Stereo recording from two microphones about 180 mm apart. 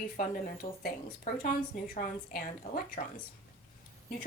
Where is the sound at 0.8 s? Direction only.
50° left (ahead or behind).